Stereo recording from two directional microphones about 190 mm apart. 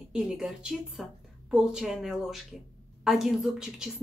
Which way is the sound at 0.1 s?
5° right (ahead or behind).